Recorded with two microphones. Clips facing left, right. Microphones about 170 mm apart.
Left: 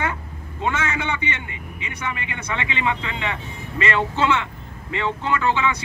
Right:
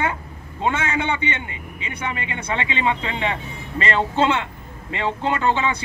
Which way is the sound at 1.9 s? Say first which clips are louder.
Right 2 dB; 30° right (ahead or behind).